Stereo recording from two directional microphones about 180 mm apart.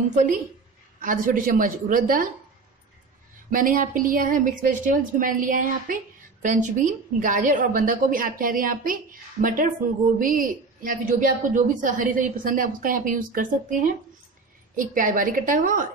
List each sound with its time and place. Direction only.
0.1 s a woman's voice: 45° right (ahead or behind)
3.4 s a woman's voice: 50° right (ahead or behind)